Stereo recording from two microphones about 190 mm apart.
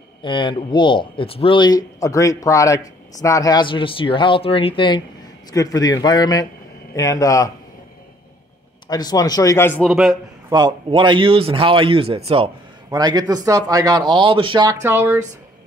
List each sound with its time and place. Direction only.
0.2 s speech: 25° left (ahead or behind)
8.8 s speech: 20° left (ahead or behind)
9.8 s a man's voice: centre (ahead or behind)
10.5 s speech: 25° right (ahead or behind)